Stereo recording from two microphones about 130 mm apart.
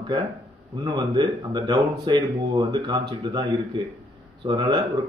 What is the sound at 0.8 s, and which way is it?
Speech, 35° right (ahead or behind).